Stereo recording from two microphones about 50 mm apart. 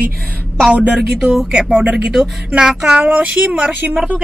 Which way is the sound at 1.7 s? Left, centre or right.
Centre.